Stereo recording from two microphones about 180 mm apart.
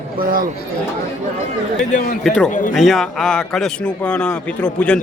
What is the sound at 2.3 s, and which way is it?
Speech, 5° right (ahead or behind).